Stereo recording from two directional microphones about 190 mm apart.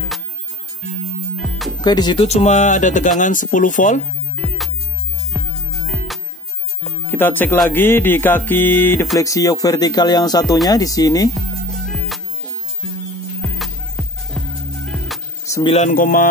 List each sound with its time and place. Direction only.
1.8 s speech: 20° left (ahead or behind)
2.2 s speech: 35° left (ahead or behind)
5.3 s music: centre (ahead or behind)
7.1 s speech: 10° left (ahead or behind)
11.3 s music: centre (ahead or behind)
13.4 s music: centre (ahead or behind)
15.4 s music: 15° left (ahead or behind)
15.7 s speech: 40° left (ahead or behind)